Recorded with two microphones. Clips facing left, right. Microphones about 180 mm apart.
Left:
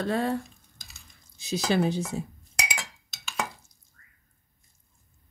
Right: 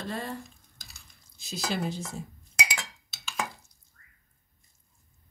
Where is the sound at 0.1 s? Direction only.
70° left (ahead or behind).